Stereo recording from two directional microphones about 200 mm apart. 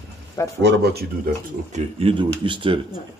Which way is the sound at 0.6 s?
55° right (ahead or behind).